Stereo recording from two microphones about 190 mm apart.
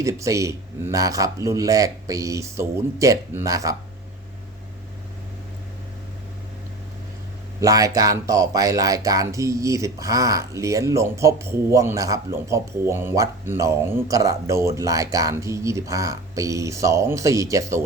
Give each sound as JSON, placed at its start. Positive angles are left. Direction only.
{"t": 0.0, "sound": "speech", "side_deg": -15}
{"t": 7.6, "sound": "speech", "side_deg": -20}